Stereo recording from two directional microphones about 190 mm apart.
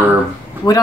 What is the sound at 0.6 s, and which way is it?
Speech, 20° left (ahead or behind).